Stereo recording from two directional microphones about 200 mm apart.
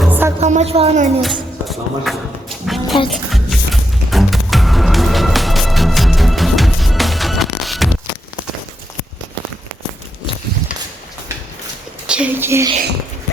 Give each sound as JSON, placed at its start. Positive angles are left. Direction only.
{"t": 0.0, "sound": "music", "side_deg": -10}
{"t": 0.3, "sound": "speech", "side_deg": -35}
{"t": 1.2, "sound": "music", "side_deg": 0}
{"t": 2.6, "sound": "a sound", "side_deg": 0}
{"t": 3.1, "sound": "music", "side_deg": 0}
{"t": 12.0, "sound": "a sound", "side_deg": -5}